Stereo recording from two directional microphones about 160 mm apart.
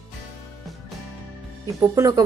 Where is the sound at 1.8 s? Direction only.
20° right (ahead or behind).